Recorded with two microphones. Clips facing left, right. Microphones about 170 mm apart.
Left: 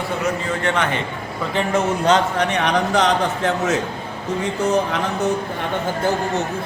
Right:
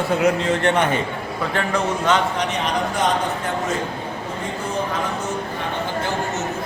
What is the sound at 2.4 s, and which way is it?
A man's voice, 65° left (ahead or behind).